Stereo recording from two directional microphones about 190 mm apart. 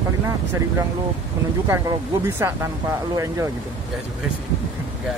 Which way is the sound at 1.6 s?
15° right (ahead or behind).